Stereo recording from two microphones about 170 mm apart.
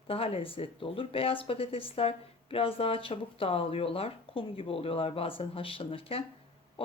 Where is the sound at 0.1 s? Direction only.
35° left (ahead or behind).